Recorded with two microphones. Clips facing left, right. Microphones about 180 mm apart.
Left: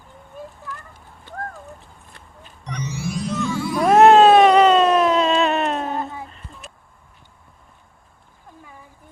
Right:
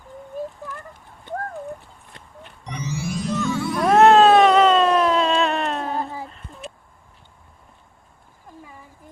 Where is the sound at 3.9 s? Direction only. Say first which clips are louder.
Left 2 dB; 10° left (ahead or behind).